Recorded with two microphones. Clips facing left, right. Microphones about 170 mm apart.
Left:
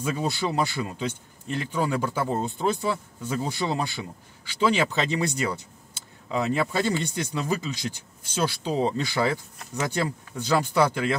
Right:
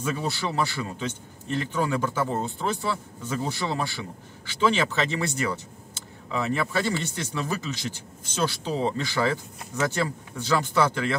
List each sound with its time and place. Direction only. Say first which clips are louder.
0.0 s speech: left 2 dB; 15° left (ahead or behind)